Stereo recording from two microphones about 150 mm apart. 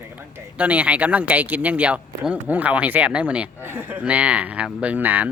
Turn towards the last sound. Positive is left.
turn(degrees=-10)  # may be behind; listen again after turning